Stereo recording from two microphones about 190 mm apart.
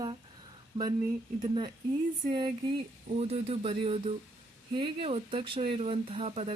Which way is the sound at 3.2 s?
30° right (ahead or behind).